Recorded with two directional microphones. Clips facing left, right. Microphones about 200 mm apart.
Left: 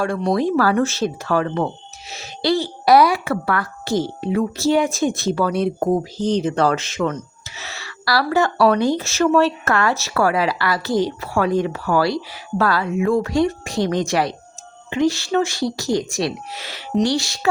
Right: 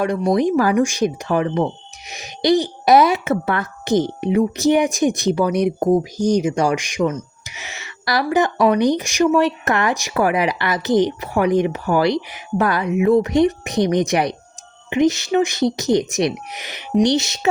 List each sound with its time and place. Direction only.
0.0 s speech: 20° right (ahead or behind)